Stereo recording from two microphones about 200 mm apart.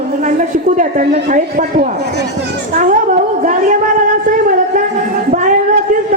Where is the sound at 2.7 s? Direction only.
40° right (ahead or behind).